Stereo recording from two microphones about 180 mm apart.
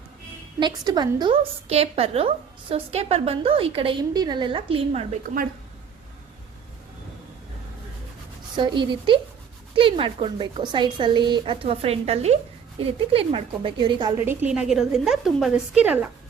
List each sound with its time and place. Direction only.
0.6 s a woman's voice: 25° right (ahead or behind)
8.5 s speech: 25° right (ahead or behind)
14.3 s a woman's voice: 5° right (ahead or behind)